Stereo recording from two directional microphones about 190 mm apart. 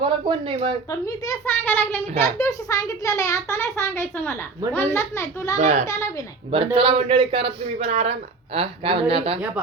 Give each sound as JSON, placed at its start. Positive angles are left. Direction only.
{"t": 0.0, "sound": "speech", "side_deg": -25}
{"t": 0.9, "sound": "a child's voice", "side_deg": 15}
{"t": 5.5, "sound": "a woman's voice", "side_deg": -40}
{"t": 6.7, "sound": "speech", "side_deg": -30}